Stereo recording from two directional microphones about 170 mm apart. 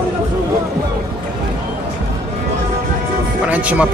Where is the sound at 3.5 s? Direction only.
10° right (ahead or behind).